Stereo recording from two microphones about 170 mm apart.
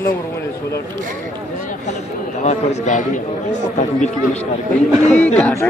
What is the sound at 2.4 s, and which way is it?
A man's voice, 45° left (ahead or behind).